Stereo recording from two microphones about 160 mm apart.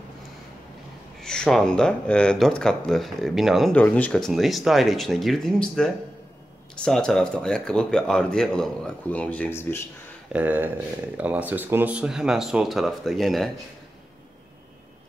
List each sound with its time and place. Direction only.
1.2 s speech: 5° left (ahead or behind)
3.7 s speech: 10° left (ahead or behind)
10.3 s speech: 10° right (ahead or behind)